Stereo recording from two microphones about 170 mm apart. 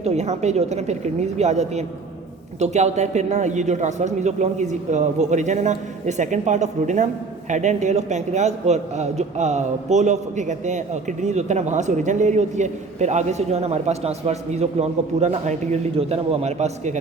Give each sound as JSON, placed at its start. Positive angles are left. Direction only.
{"t": 0.0, "sound": "a woman's voice", "side_deg": -40}